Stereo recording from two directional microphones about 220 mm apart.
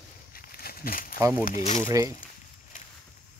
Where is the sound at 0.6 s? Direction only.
40° left (ahead or behind).